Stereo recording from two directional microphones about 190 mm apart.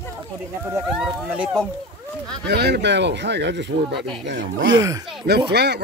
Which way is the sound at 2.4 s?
60° right (ahead or behind).